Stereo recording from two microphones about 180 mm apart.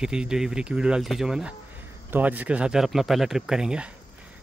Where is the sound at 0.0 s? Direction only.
5° right (ahead or behind).